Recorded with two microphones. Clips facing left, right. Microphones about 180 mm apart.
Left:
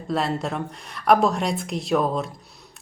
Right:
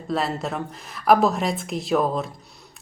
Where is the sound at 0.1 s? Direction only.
Centre (ahead or behind).